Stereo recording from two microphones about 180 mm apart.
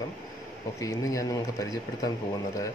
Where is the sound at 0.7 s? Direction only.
15° left (ahead or behind).